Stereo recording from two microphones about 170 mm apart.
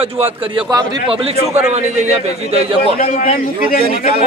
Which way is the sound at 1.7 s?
40° right (ahead or behind).